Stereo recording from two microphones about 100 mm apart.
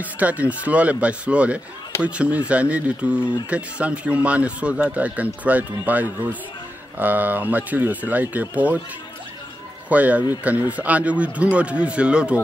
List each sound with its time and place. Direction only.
0.0 s speech: 15° right (ahead or behind)
9.8 s speech: 15° right (ahead or behind)